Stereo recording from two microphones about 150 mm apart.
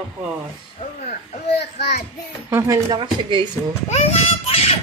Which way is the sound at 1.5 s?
90° left.